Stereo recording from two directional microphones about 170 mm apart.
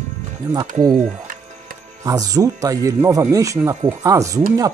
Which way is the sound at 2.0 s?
20° right (ahead or behind).